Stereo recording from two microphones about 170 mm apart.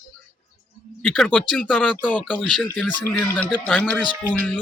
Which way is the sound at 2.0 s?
5° right (ahead or behind).